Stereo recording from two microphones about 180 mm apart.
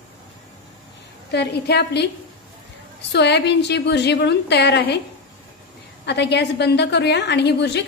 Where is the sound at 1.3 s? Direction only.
70° left (ahead or behind).